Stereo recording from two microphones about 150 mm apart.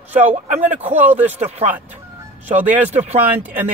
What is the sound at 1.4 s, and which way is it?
Speech, 45° right (ahead or behind).